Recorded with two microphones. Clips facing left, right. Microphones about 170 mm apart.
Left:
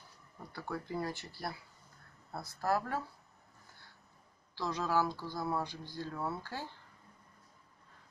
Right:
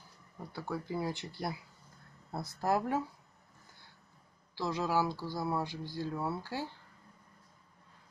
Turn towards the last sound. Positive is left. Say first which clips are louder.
# right 4 dB
turn(degrees=-10)  # may be behind; listen again after turning